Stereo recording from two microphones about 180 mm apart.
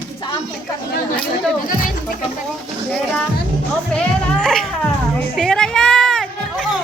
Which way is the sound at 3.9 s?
5° left (ahead or behind).